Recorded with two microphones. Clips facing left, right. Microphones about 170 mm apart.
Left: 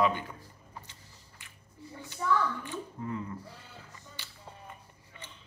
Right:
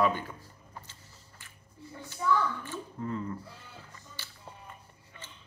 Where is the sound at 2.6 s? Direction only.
15° left (ahead or behind).